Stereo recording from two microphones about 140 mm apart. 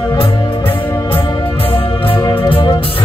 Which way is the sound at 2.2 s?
20° left (ahead or behind).